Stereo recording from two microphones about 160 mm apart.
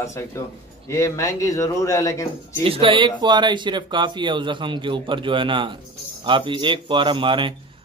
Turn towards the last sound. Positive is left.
turn(degrees=-30)  # may be behind; listen again after turning